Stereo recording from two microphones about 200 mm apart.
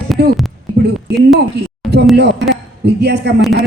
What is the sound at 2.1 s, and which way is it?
A woman's voice, 55° right (ahead or behind).